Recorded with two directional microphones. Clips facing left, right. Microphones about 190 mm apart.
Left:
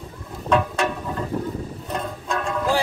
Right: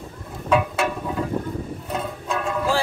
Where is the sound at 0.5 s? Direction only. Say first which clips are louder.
Even; 5° right (ahead or behind).